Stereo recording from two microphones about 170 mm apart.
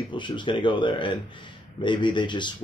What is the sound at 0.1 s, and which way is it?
A man's voice, 30° left (ahead or behind).